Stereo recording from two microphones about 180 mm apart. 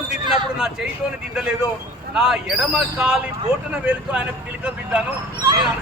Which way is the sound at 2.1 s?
5° right (ahead or behind).